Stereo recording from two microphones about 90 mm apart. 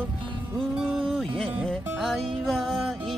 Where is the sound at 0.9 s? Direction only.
5° right (ahead or behind).